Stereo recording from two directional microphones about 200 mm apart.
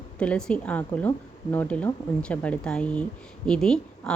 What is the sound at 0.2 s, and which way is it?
A woman's voice, 5° left (ahead or behind).